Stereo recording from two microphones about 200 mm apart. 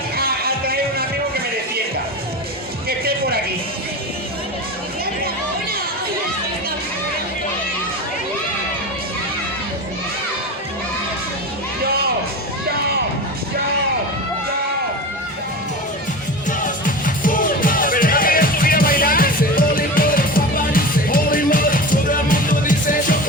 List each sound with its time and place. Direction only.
0.2 s music: 50° right (ahead or behind)
3.0 s music: 50° right (ahead or behind)
16.5 s music: 40° left (ahead or behind)